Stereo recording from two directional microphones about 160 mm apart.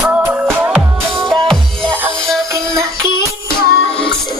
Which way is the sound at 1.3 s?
5° left (ahead or behind).